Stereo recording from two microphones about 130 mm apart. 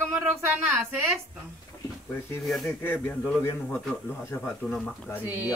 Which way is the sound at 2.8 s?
15° left (ahead or behind).